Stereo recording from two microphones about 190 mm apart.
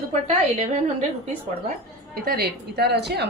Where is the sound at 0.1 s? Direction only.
35° right (ahead or behind).